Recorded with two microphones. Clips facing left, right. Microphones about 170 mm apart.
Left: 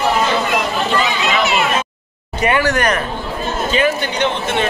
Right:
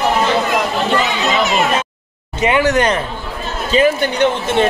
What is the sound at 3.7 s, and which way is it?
Speech, 35° right (ahead or behind).